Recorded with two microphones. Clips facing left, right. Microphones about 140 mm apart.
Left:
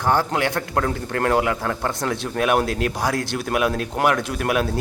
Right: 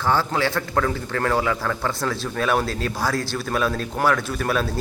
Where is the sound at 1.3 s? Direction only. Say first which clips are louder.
Left 1 dB; 20° left (ahead or behind).